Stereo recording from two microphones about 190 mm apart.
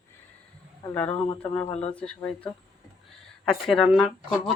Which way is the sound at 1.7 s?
35° left (ahead or behind).